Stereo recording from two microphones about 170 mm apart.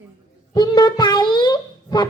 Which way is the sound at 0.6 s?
25° left (ahead or behind).